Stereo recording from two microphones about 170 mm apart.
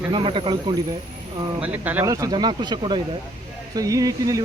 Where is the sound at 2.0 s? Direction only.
20° right (ahead or behind).